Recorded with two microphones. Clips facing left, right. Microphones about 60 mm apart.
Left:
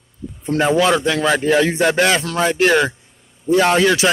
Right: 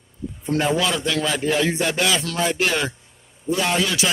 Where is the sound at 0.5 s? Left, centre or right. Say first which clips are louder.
Left 6 dB; left.